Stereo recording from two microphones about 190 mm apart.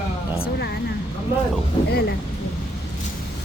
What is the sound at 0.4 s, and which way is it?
Speech, 60° left (ahead or behind).